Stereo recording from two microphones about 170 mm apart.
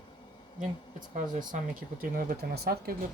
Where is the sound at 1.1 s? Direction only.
50° right (ahead or behind); by 2.9 s 65° right (ahead or behind).